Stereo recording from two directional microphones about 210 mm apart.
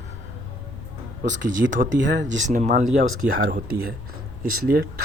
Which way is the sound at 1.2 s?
60° right (ahead or behind).